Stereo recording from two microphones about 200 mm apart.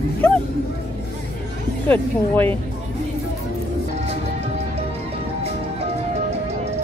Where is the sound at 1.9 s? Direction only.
10° left (ahead or behind).